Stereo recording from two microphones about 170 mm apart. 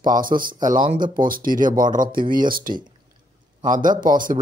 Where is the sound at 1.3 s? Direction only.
55° right (ahead or behind).